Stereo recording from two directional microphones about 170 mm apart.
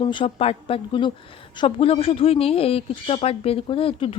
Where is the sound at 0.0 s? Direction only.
30° left (ahead or behind).